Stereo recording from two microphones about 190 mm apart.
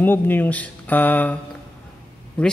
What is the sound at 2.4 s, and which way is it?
Speech, 5° left (ahead or behind).